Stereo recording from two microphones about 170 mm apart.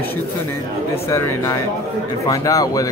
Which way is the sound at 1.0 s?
15° left (ahead or behind).